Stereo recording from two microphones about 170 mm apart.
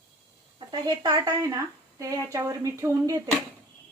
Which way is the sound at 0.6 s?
25° right (ahead or behind).